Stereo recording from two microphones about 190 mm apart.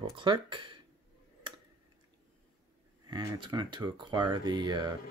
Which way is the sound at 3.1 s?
20° right (ahead or behind).